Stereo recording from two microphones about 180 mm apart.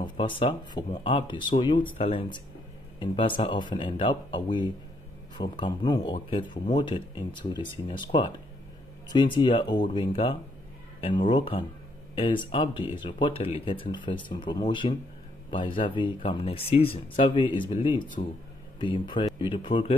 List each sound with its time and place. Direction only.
0.0 s speech: 30° left (ahead or behind)